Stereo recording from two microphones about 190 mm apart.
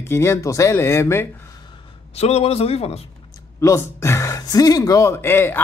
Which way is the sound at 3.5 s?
15° left (ahead or behind).